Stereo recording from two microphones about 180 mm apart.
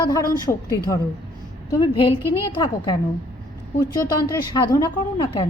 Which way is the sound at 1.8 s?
30° left (ahead or behind).